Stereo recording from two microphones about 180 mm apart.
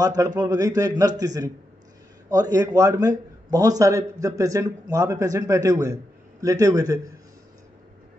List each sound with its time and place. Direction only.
0.0 s a man's voice: 20° right (ahead or behind)